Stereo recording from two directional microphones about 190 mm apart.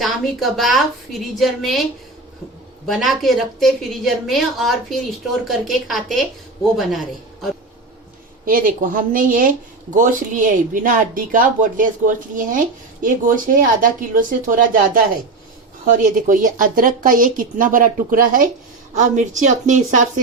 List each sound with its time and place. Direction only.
0.0 s a woman's voice: centre (ahead or behind)
2.8 s a woman's voice: centre (ahead or behind)
8.4 s a woman's voice: 45° right (ahead or behind)